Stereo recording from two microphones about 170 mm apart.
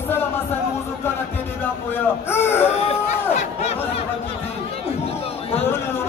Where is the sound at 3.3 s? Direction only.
40° left (ahead or behind).